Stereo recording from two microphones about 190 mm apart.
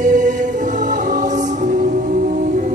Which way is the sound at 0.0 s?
40° right (ahead or behind).